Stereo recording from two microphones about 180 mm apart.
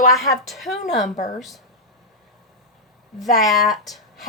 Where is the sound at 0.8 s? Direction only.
45° left (ahead or behind).